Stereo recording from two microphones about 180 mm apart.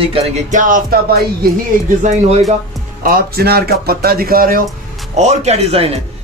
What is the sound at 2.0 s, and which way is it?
Speech, 40° right (ahead or behind).